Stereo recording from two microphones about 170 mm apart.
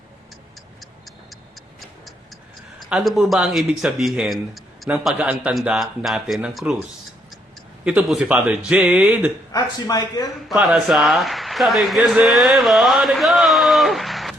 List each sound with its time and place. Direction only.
2.9 s speech: centre (ahead or behind)
7.9 s speech: 5° right (ahead or behind)
9.5 s speech: 20° left (ahead or behind)
10.5 s a man's voice: 5° right (ahead or behind)